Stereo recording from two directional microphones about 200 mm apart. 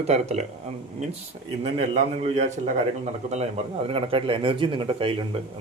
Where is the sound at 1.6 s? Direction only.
35° right (ahead or behind).